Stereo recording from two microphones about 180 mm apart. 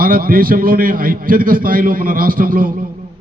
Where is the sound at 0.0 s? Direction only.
50° right (ahead or behind).